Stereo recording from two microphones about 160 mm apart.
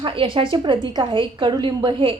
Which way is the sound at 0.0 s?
35° right (ahead or behind).